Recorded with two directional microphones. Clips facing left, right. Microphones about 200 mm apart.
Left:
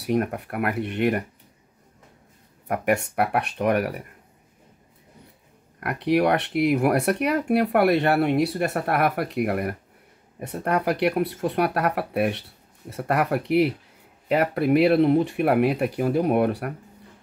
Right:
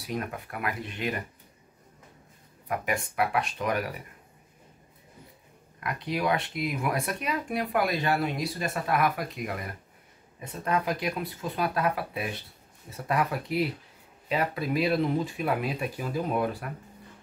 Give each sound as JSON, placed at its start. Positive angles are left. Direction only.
{"t": 0.0, "sound": "speech", "side_deg": 60}
{"t": 2.7, "sound": "speech", "side_deg": 65}
{"t": 5.8, "sound": "speech", "side_deg": 65}